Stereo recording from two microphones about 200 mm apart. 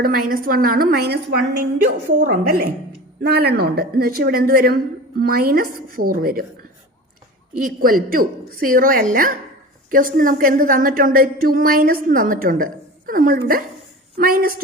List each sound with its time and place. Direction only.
0.0 s a woman's voice: 45° right (ahead or behind)
7.6 s a woman's voice: 45° right (ahead or behind)